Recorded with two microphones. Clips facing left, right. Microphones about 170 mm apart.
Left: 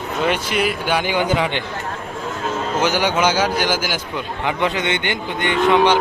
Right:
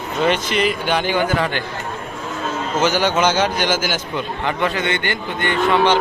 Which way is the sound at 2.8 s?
10° left (ahead or behind).